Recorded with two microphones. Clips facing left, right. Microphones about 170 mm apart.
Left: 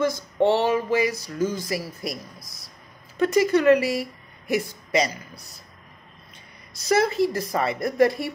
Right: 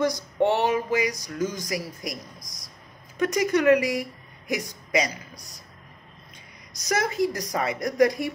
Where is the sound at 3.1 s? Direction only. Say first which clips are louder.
Left 3 dB; 15° right (ahead or behind).